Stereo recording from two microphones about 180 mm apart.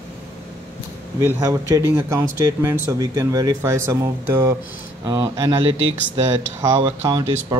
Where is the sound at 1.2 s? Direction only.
20° right (ahead or behind).